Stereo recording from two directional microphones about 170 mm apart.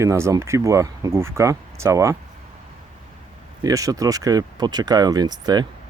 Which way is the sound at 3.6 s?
20° right (ahead or behind).